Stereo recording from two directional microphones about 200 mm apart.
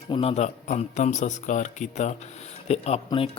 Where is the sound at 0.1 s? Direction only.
30° left (ahead or behind).